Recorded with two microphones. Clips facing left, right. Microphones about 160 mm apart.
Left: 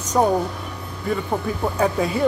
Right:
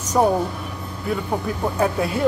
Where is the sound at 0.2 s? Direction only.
5° right (ahead or behind).